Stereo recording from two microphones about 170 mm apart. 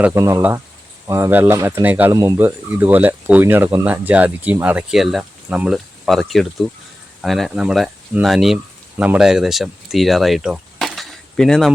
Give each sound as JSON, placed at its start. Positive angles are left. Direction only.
{"t": 0.0, "sound": "speech", "side_deg": -15}